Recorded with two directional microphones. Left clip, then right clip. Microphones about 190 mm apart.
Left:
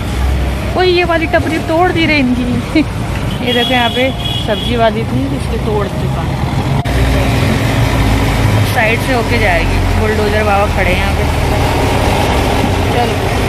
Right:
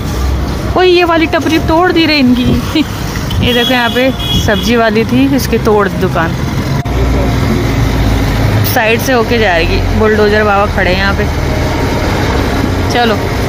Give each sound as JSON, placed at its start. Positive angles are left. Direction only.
{"t": 0.7, "sound": "speech", "side_deg": -20}
{"t": 3.5, "sound": "speech", "side_deg": -20}
{"t": 8.7, "sound": "speech", "side_deg": -25}